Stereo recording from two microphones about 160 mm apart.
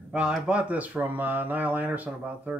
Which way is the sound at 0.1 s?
5° right (ahead or behind).